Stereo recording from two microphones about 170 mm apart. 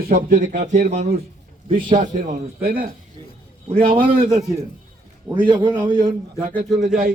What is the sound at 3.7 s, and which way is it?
Speech, 35° right (ahead or behind).